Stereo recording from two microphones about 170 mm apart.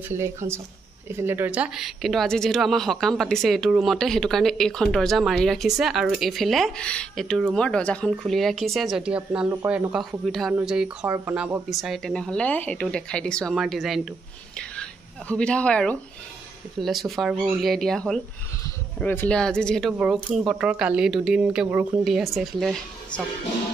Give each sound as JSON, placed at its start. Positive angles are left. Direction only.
{"t": 0.1, "sound": "speech", "side_deg": -15}